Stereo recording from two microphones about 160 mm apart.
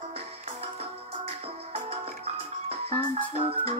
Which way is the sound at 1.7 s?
40° right (ahead or behind).